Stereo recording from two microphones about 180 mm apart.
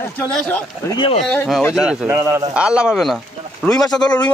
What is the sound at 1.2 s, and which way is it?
Speech, 5° left (ahead or behind).